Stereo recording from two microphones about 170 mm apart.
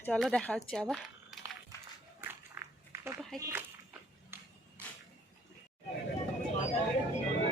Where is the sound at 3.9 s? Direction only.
15° right (ahead or behind).